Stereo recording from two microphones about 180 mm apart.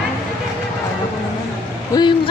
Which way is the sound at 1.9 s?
20° left (ahead or behind).